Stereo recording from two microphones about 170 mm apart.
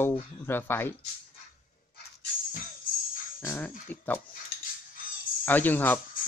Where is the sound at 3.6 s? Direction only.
10° left (ahead or behind).